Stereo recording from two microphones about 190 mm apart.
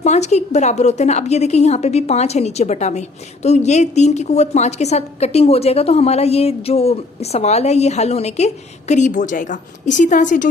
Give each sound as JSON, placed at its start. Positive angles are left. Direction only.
{"t": 0.0, "sound": "a woman's voice", "side_deg": 35}